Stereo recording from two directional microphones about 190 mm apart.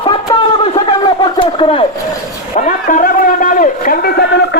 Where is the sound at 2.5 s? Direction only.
40° left (ahead or behind).